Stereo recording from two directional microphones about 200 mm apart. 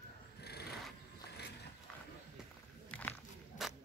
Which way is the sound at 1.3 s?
55° left (ahead or behind).